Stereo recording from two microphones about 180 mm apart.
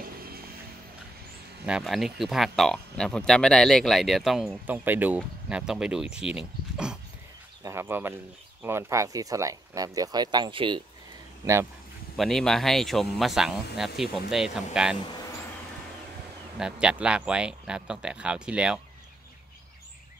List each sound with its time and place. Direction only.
0.0 s music: 55° right (ahead or behind)
1.7 s speech: centre (ahead or behind); by 10.8 s 25° right (ahead or behind)
12.2 s speech: centre (ahead or behind)
16.5 s speech: 5° right (ahead or behind)